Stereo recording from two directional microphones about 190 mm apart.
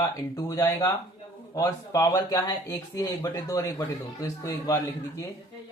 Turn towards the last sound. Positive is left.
turn(degrees=15)  # may be behind; listen again after turning